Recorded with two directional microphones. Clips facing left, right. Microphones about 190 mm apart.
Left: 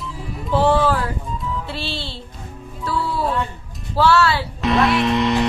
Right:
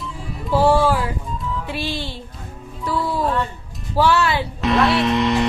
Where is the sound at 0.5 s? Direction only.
10° right (ahead or behind).